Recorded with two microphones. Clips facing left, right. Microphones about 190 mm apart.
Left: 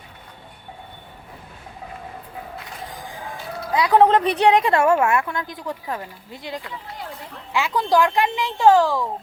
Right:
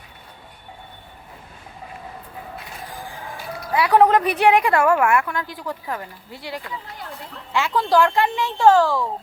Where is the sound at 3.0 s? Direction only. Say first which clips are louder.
Even; 15° left (ahead or behind).